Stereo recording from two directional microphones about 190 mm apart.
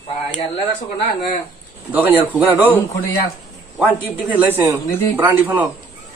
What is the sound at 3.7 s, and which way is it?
A man's voice, 5° right (ahead or behind).